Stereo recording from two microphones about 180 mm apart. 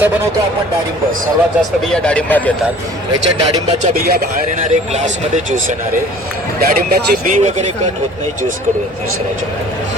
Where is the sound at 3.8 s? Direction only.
55° right (ahead or behind).